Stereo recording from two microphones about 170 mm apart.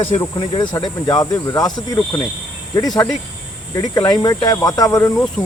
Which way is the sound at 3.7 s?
25° left (ahead or behind).